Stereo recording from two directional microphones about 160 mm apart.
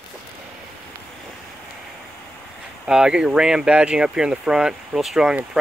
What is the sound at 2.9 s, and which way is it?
Speech, 5° right (ahead or behind).